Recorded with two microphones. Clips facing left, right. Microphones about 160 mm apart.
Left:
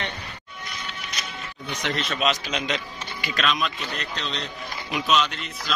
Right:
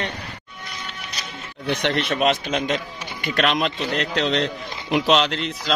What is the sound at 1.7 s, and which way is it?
Speech, 65° right (ahead or behind).